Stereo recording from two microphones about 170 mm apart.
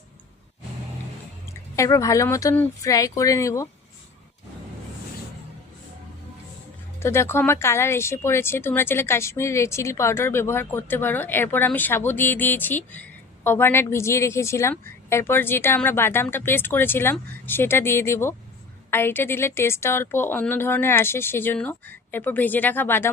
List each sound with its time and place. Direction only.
1.7 s speech: 20° left (ahead or behind)
7.0 s speech: 15° left (ahead or behind)